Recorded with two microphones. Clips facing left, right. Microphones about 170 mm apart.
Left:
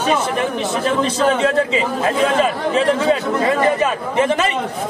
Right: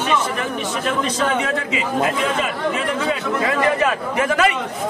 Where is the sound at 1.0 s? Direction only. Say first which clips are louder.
Left 6 dB; 30° left (ahead or behind).